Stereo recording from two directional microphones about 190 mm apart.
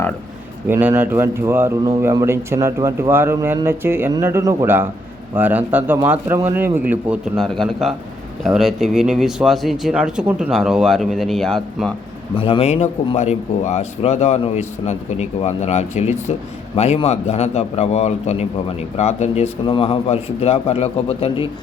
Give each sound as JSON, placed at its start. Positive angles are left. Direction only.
{"t": 0.7, "sound": "speech", "side_deg": -10}
{"t": 12.4, "sound": "a man's voice", "side_deg": 30}